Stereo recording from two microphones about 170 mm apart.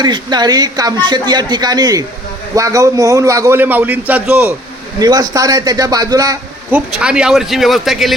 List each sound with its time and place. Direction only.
0.0 s a man's voice: 25° right (ahead or behind); by 4.5 s 10° right (ahead or behind)
4.9 s a man's voice: 20° right (ahead or behind)
6.7 s speech: 10° right (ahead or behind)